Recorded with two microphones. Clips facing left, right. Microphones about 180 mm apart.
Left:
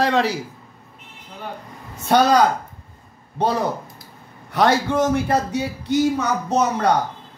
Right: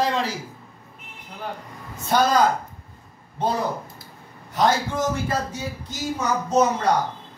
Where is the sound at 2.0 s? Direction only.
70° left (ahead or behind).